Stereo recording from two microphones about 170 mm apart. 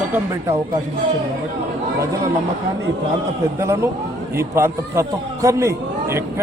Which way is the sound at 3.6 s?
15° right (ahead or behind).